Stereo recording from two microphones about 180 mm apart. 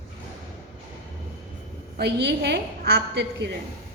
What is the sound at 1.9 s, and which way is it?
A woman's voice, 65° right (ahead or behind).